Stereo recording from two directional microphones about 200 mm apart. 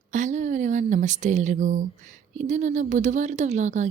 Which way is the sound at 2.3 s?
35° right (ahead or behind).